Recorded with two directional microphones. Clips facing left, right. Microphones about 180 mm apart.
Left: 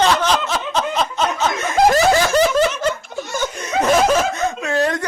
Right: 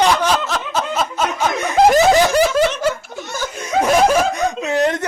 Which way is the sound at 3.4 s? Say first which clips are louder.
Right 2 dB; 10° right (ahead or behind).